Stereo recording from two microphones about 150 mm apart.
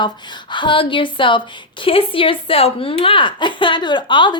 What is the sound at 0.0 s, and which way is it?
A woman's voice, 30° left (ahead or behind).